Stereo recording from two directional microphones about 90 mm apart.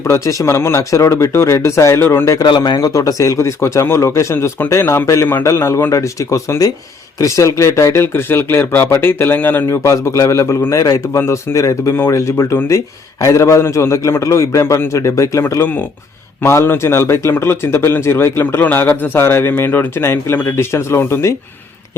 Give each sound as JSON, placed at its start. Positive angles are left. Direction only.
{"t": 0.0, "sound": "speech", "side_deg": 35}
{"t": 2.4, "sound": "a man's voice", "side_deg": 55}